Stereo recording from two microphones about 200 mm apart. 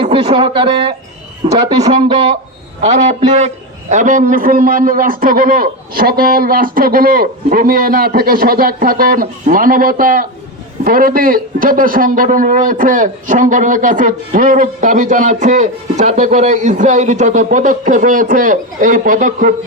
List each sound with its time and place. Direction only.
0.0 s speech: 25° right (ahead or behind)
2.8 s a man's voice: 35° right (ahead or behind)